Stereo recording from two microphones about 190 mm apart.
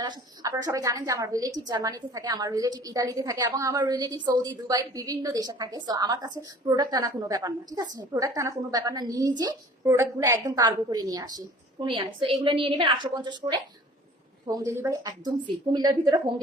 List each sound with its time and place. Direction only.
0.0 s a woman's voice: 20° right (ahead or behind)